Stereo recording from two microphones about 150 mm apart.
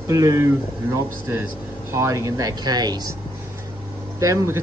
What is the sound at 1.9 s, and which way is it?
A man's voice, 20° right (ahead or behind).